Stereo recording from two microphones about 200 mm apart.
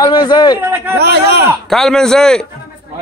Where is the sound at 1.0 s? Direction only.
55° right (ahead or behind).